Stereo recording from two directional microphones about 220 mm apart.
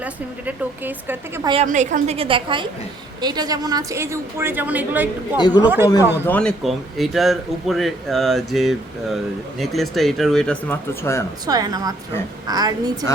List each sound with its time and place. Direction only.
0.0 s a woman's voice: 10° right (ahead or behind)
1.6 s a woman's voice: 35° right (ahead or behind); by 5.0 s 10° right (ahead or behind)
5.4 s speech: 20° left (ahead or behind)
5.6 s a woman's voice: 10° right (ahead or behind)
6.2 s speech: 5° left (ahead or behind)
11.4 s a woman's voice: 15° right (ahead or behind)